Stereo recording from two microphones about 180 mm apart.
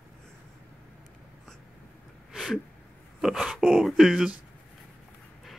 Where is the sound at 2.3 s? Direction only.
Centre (ahead or behind).